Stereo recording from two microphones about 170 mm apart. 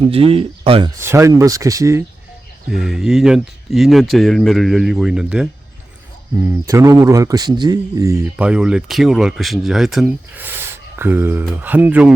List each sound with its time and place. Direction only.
0.1 s speech: 35° right (ahead or behind)
0.9 s speech: 15° right (ahead or behind)
2.6 s speech: 5° right (ahead or behind)
6.4 s speech: 15° right (ahead or behind)